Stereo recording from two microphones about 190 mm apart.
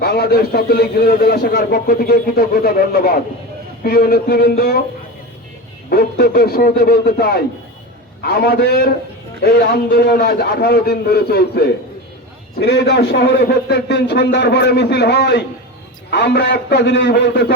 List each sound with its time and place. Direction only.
0.0 s a man's voice: 55° left (ahead or behind)
5.9 s a man's voice: 55° left (ahead or behind)